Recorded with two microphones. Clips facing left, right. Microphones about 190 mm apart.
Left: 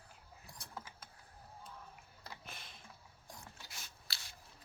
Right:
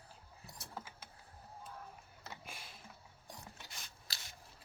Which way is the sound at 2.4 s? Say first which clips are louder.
Right 1 dB; 10° right (ahead or behind).